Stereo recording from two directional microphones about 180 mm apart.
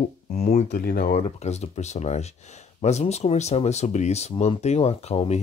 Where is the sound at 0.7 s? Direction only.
55° left (ahead or behind).